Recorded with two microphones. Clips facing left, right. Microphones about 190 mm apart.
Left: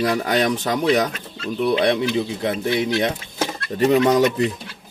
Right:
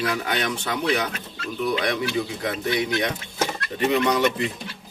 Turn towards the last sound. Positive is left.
turn(degrees=40)  # may be behind; listen again after turning